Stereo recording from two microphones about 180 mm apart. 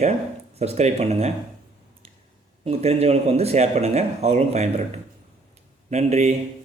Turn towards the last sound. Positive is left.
turn(degrees=-40)  # may be behind; listen again after turning